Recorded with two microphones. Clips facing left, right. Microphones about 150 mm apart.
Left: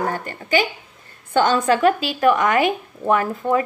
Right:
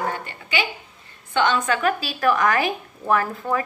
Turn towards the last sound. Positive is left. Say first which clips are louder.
# left 3 dB
turn(degrees=20)  # may be behind; listen again after turning